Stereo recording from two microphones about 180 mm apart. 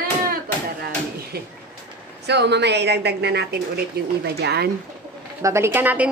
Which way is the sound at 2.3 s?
70° right (ahead or behind).